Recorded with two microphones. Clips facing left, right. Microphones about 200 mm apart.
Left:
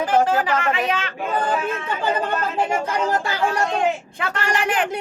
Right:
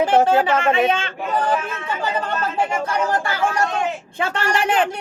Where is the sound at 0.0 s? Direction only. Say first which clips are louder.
Right 3 dB; 25° right (ahead or behind).